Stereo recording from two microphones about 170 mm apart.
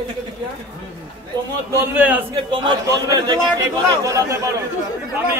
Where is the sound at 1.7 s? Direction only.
10° right (ahead or behind).